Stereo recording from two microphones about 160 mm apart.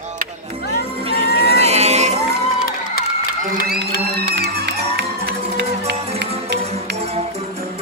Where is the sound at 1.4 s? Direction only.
40° right (ahead or behind).